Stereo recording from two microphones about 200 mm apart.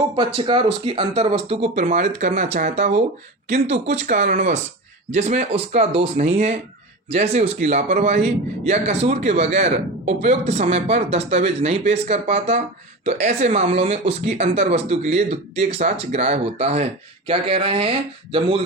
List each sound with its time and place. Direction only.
0.2 s speech: 25° right (ahead or behind)